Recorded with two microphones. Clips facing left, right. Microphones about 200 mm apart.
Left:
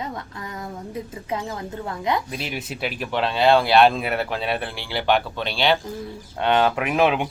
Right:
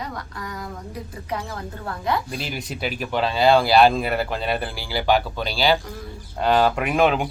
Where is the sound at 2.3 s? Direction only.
Centre (ahead or behind).